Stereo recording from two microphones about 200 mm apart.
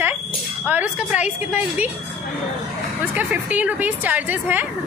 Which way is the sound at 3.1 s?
5° right (ahead or behind).